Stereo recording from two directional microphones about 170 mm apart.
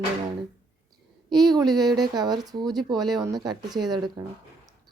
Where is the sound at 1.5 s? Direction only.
25° right (ahead or behind).